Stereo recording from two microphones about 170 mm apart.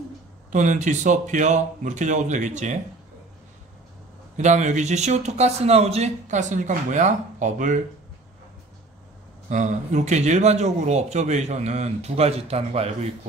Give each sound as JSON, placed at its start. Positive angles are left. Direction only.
{"t": 0.5, "sound": "speech", "side_deg": -45}
{"t": 4.4, "sound": "speech", "side_deg": -45}
{"t": 9.5, "sound": "speech", "side_deg": -45}